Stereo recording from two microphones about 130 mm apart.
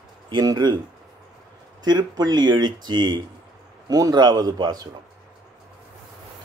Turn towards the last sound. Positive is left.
turn(degrees=-35)  # may be behind; listen again after turning